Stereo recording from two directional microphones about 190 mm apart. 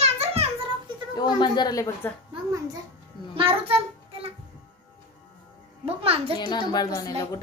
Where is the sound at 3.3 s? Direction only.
30° right (ahead or behind).